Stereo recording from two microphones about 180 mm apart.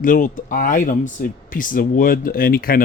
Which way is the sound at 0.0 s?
50° left (ahead or behind).